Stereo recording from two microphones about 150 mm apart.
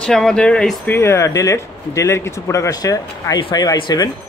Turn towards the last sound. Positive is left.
turn(degrees=30)  # may be behind; listen again after turning